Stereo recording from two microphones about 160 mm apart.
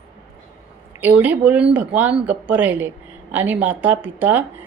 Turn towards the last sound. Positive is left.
turn(degrees=-10)  # may be behind; listen again after turning